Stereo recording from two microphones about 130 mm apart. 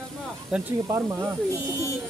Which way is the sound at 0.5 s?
10° right (ahead or behind).